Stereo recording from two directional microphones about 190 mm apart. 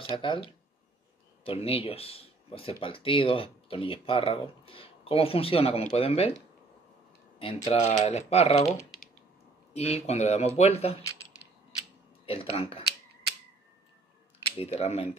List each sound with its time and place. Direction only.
0.1 s speech: 25° left (ahead or behind)
7.7 s speech: 35° left (ahead or behind)
9.8 s speech: 35° left (ahead or behind)
12.3 s speech: 30° left (ahead or behind)
14.4 s speech: 30° left (ahead or behind)